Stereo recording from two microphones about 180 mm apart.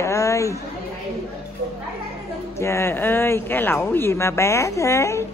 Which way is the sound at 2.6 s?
15° left (ahead or behind).